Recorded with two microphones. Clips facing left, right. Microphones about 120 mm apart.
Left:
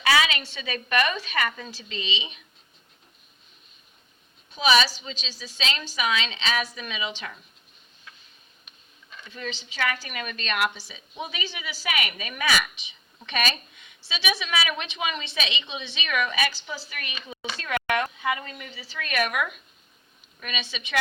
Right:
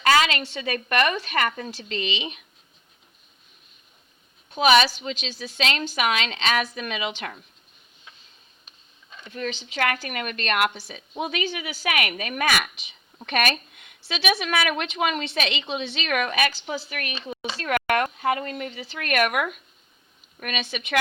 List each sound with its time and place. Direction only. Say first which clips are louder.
0.9 s a woman's voice: right 1 dB; 50° right (ahead or behind)
4.5 s a woman's voice: right 4 dB; 55° right (ahead or behind)
9.0 s a sound: right 1 dB; 20° right (ahead or behind)
9.3 s a woman's voice: right 5 dB; 55° right (ahead or behind)
17.1 s speech: right 6 dB; 30° right (ahead or behind)
17.7 s a woman's voice: right 3 dB; 55° right (ahead or behind)